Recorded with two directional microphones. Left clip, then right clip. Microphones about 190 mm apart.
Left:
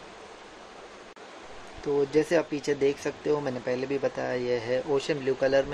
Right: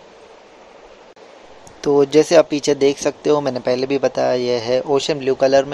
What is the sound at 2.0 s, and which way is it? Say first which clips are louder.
Speech: right 12 dB; 40° right (ahead or behind).